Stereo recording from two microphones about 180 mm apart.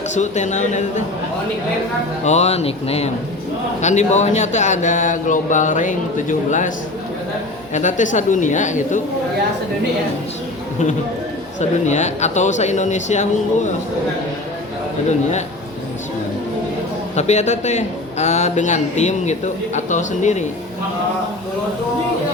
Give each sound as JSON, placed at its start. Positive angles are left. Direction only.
{"t": 0.1, "sound": "a man's voice", "side_deg": 40}
{"t": 2.2, "sound": "a man's voice", "side_deg": 40}
{"t": 7.7, "sound": "speech", "side_deg": 45}
{"t": 11.6, "sound": "a man's voice", "side_deg": 40}
{"t": 17.2, "sound": "a man's voice", "side_deg": 40}